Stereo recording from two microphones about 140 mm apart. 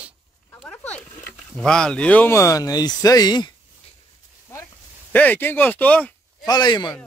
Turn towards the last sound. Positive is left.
turn(degrees=30)  # may be behind; listen again after turning